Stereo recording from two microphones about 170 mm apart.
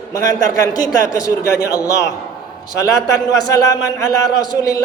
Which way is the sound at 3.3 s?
20° left (ahead or behind).